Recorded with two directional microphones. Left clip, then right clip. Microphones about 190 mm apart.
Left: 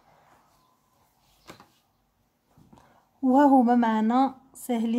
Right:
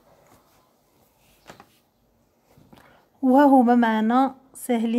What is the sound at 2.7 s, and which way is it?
A woman's voice, 20° right (ahead or behind).